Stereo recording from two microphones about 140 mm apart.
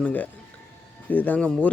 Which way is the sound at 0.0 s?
10° left (ahead or behind).